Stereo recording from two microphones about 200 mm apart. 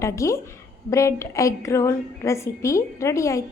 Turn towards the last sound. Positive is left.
turn(degrees=15)  # may be behind; listen again after turning